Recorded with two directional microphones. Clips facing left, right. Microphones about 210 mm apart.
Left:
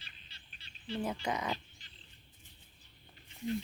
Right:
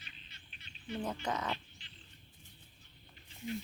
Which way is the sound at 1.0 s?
10° left (ahead or behind).